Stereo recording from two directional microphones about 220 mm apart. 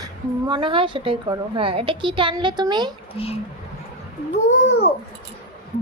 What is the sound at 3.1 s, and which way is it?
Speech, 25° left (ahead or behind).